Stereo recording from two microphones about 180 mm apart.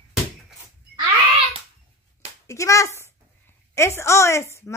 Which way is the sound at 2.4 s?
15° left (ahead or behind).